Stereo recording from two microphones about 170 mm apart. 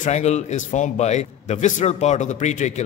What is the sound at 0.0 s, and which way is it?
A man's voice, 40° left (ahead or behind).